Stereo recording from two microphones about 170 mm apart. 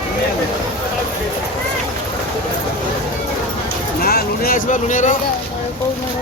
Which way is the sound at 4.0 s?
65° left (ahead or behind).